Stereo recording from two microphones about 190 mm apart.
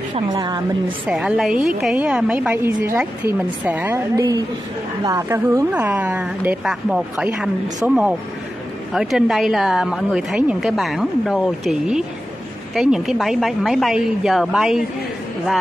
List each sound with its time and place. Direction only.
0.1 s a woman's voice: 20° right (ahead or behind)
1.0 s a woman's voice: 5° right (ahead or behind)